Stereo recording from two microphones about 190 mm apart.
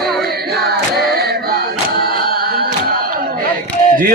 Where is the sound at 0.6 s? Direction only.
55° right (ahead or behind).